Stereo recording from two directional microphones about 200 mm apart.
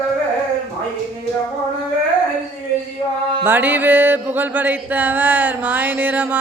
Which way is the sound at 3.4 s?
10° right (ahead or behind).